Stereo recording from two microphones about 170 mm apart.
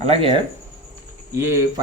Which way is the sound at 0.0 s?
35° right (ahead or behind).